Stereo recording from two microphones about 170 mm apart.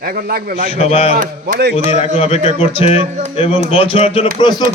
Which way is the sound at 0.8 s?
35° left (ahead or behind).